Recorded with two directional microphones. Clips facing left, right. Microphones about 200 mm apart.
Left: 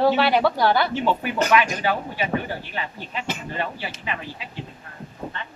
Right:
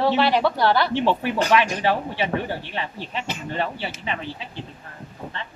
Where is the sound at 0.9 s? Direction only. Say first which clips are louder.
Right 2 dB; 30° right (ahead or behind).